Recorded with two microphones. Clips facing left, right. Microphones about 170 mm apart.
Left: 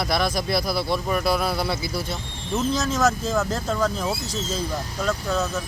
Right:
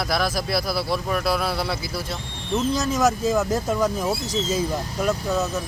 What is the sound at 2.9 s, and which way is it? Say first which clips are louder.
Speech: right 4 dB; 15° right (ahead or behind).